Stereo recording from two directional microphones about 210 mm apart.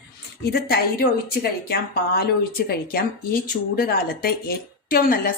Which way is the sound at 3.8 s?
45° left (ahead or behind).